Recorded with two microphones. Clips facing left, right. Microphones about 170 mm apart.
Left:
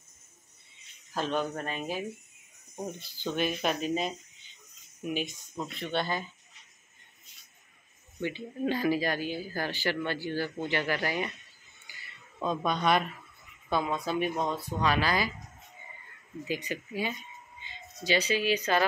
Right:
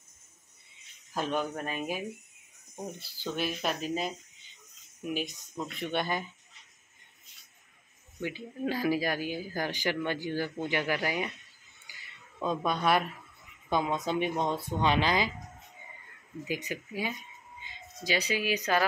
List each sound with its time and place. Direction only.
1.1 s speech: 10° right (ahead or behind)
5.8 s speech: 15° right (ahead or behind)
8.2 s speech: 5° right (ahead or behind)
12.4 s speech: 5° right (ahead or behind)
13.7 s speech: 20° right (ahead or behind)
16.4 s speech: 10° right (ahead or behind)